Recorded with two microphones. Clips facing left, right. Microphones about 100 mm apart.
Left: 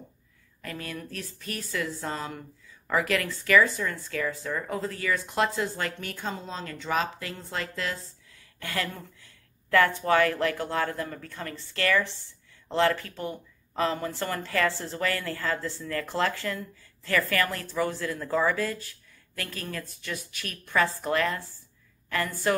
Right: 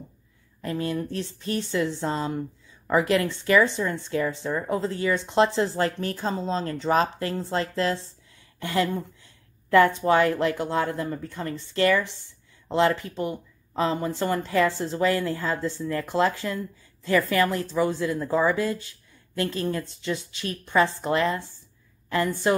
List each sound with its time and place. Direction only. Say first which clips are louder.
0.6 s speech: right 9 dB; 25° right (ahead or behind)